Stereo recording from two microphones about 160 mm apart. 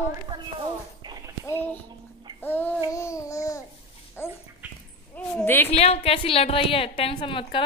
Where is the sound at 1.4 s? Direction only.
15° left (ahead or behind).